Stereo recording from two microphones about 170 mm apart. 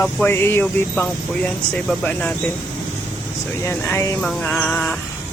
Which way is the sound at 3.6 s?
15° left (ahead or behind).